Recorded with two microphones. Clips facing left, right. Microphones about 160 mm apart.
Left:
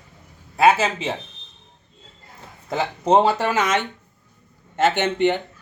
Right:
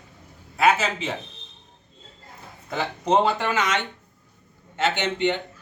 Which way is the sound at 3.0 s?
30° left (ahead or behind).